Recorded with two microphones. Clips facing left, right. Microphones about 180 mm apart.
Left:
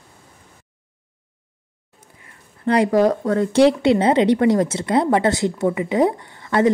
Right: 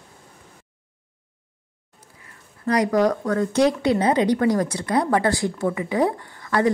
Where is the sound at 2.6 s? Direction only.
30° left (ahead or behind).